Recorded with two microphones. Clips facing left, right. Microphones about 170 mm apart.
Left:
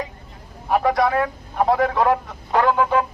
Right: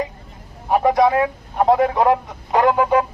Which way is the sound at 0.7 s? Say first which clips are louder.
Right 3 dB; 20° right (ahead or behind).